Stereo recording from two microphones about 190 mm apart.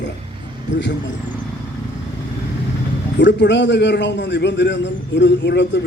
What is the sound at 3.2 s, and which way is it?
A man's voice, 70° left (ahead or behind).